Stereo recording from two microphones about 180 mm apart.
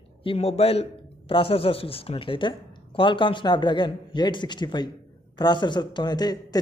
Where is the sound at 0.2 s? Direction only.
30° left (ahead or behind).